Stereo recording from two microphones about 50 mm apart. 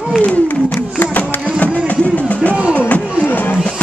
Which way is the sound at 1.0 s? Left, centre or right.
Left.